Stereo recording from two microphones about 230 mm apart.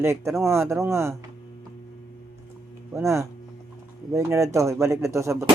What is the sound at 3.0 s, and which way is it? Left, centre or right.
Speech, centre.